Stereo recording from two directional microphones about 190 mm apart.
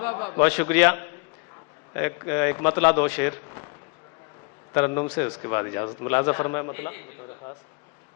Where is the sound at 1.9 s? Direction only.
10° left (ahead or behind).